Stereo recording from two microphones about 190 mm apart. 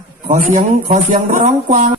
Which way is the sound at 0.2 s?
45° right (ahead or behind).